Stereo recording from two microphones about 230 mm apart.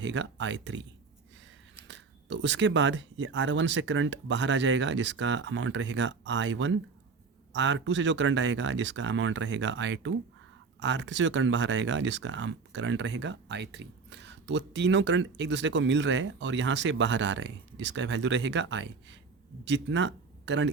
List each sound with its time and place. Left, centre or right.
0.0 s speech: right
1.9 s speech: right